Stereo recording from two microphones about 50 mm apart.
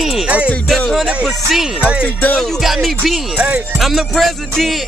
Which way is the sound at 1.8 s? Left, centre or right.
Right.